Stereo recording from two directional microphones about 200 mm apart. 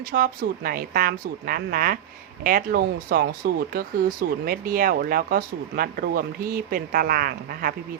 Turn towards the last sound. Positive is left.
turn(degrees=-45)  # may be behind; listen again after turning